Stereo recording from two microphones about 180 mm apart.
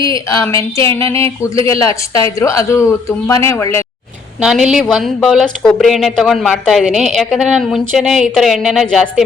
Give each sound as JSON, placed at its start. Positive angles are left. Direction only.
{"t": 0.1, "sound": "a woman's voice", "side_deg": 15}
{"t": 4.4, "sound": "a woman's voice", "side_deg": -5}